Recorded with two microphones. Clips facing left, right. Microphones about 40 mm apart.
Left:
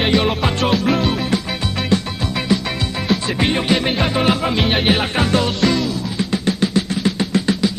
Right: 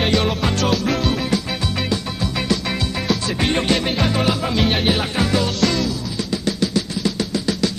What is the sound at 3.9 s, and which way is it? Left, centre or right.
Music, left.